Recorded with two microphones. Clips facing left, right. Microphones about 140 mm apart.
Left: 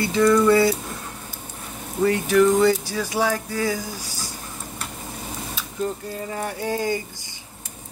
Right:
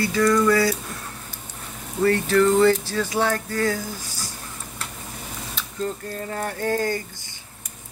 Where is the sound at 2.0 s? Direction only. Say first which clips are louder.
Left 1 dB; 15° left (ahead or behind).